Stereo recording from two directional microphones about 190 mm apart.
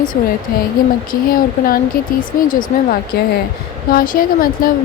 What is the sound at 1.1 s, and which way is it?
Speech, 50° left (ahead or behind).